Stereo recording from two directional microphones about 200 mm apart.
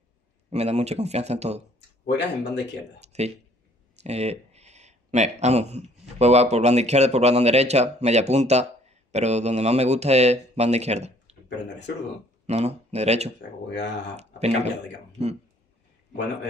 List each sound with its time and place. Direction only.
0.5 s speech: 35° right (ahead or behind)
2.0 s speech: 60° left (ahead or behind)
3.0 s speech: 35° right (ahead or behind)
12.4 s speech: 35° right (ahead or behind)
13.7 s speech: 60° left (ahead or behind)
14.1 s speech: 35° right (ahead or behind)